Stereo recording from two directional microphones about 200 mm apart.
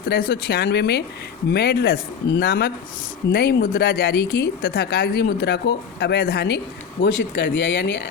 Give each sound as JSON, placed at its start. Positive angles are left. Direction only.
{"t": 0.1, "sound": "speech", "side_deg": 50}
{"t": 7.0, "sound": "speech", "side_deg": 65}